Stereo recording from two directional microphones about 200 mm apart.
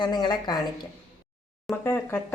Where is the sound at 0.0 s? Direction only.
20° left (ahead or behind).